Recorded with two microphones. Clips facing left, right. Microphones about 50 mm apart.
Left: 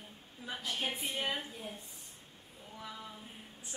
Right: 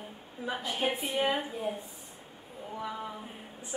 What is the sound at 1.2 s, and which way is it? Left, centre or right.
A woman's voice, centre.